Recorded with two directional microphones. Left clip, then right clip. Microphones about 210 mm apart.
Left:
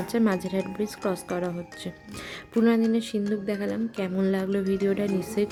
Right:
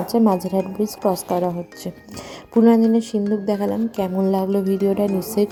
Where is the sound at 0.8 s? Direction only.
25° left (ahead or behind).